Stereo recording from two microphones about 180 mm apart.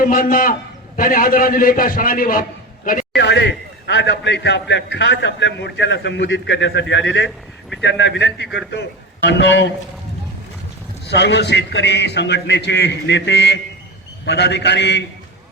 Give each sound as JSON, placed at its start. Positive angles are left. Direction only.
{"t": 0.0, "sound": "a man's voice", "side_deg": 50}
{"t": 2.8, "sound": "a sound", "side_deg": 50}
{"t": 3.2, "sound": "a man's voice", "side_deg": 75}
{"t": 11.0, "sound": "a man's voice", "side_deg": 70}